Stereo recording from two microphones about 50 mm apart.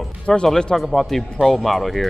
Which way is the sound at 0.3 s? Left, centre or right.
Centre.